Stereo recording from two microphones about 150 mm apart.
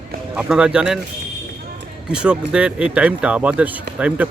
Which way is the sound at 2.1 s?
5° right (ahead or behind).